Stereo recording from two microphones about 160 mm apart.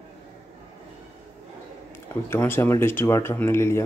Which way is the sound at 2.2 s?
15° left (ahead or behind).